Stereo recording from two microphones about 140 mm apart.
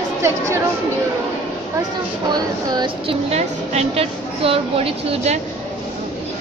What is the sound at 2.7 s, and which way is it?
A woman's voice, 40° right (ahead or behind).